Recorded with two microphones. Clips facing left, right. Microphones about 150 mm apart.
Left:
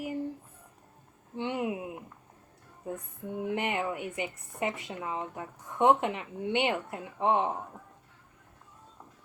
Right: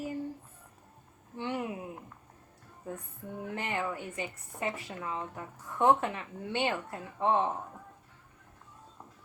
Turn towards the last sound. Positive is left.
turn(degrees=15)  # may be behind; listen again after turning